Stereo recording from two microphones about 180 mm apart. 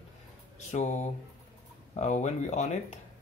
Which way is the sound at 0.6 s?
40° left (ahead or behind).